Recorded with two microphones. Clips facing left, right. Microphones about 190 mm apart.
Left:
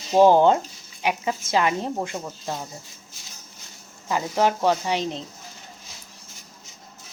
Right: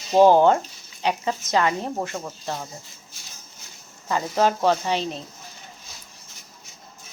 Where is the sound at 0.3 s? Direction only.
15° left (ahead or behind).